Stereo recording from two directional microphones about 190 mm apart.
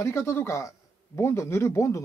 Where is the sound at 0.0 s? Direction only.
15° left (ahead or behind).